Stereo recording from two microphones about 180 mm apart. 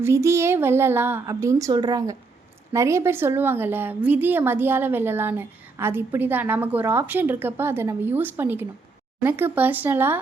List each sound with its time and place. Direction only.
0.0 s a woman's voice: 15° right (ahead or behind)